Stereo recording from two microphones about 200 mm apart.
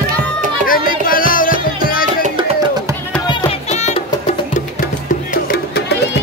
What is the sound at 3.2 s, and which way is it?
Music, 30° left (ahead or behind).